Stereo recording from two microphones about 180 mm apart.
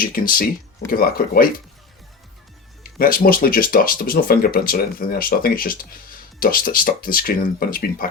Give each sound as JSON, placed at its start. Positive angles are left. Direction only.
{"t": 0.0, "sound": "speech", "side_deg": 55}
{"t": 2.8, "sound": "speech", "side_deg": 50}